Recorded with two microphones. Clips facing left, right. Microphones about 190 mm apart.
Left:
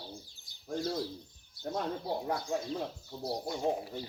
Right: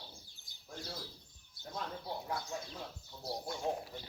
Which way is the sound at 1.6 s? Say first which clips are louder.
Left 8 dB; 55° left (ahead or behind).